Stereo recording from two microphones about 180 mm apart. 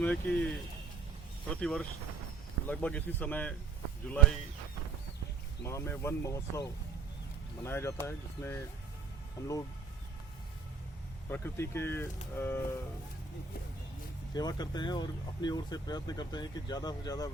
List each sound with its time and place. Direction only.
0.0 s speech: 5° left (ahead or behind)
5.6 s speech: 15° left (ahead or behind)
11.3 s speech: 15° left (ahead or behind)
14.3 s speech: 20° left (ahead or behind)